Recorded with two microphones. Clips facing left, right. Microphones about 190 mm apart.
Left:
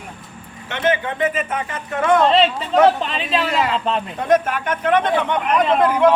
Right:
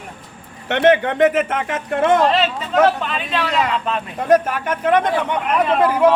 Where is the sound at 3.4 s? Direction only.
5° left (ahead or behind).